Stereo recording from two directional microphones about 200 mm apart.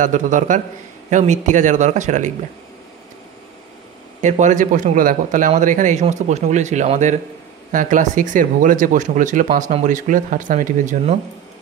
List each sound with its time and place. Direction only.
0.0 s speech: 40° right (ahead or behind)
4.2 s speech: 35° right (ahead or behind)